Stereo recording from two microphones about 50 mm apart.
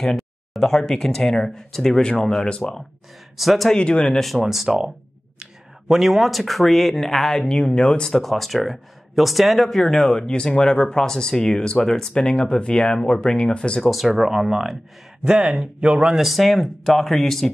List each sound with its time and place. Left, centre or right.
0.0 s speech: centre
3.3 s speech: centre
3.7 s speech: left
4.5 s speech: centre
5.9 s speech: centre
13.8 s speech: centre
15.2 s speech: centre
16.3 s speech: centre